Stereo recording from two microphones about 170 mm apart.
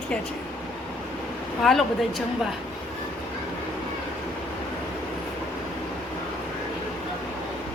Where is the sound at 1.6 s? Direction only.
Centre (ahead or behind).